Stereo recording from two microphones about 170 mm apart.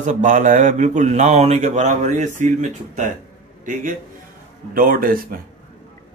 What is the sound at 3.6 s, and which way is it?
A man's voice, 50° right (ahead or behind).